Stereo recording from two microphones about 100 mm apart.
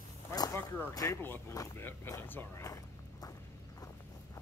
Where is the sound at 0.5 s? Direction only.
20° left (ahead or behind).